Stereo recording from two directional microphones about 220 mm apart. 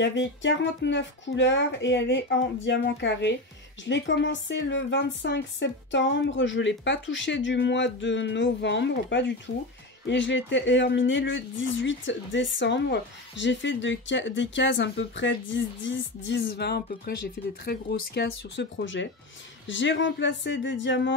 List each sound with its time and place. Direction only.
0.0 s speech: 55° left (ahead or behind)